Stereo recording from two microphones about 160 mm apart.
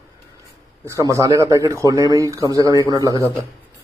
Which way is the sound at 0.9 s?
20° right (ahead or behind).